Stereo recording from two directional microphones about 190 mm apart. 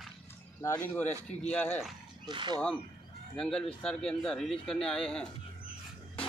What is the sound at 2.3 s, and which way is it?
Speech, 25° right (ahead or behind).